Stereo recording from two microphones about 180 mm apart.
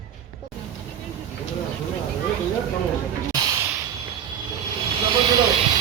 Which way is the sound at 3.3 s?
20° right (ahead or behind).